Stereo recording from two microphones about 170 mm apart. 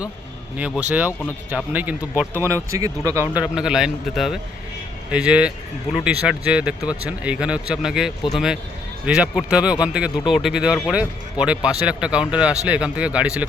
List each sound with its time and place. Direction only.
0.5 s speech: 10° right (ahead or behind)
2.7 s speech: 20° right (ahead or behind)
3.4 s a man's voice: 5° right (ahead or behind)